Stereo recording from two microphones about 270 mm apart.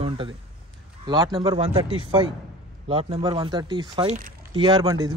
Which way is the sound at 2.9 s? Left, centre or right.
Right.